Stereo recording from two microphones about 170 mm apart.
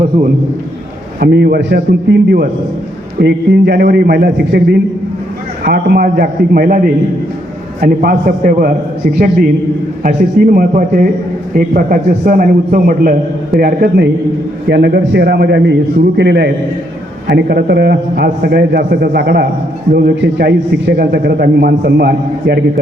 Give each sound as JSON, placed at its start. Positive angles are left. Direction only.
{"t": 1.2, "sound": "a man's voice", "side_deg": -70}